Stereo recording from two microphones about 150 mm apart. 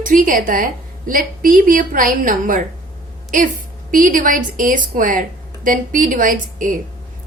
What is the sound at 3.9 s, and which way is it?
A woman's voice, 65° right (ahead or behind).